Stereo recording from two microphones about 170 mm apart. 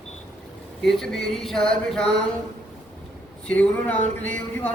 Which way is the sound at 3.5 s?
10° left (ahead or behind).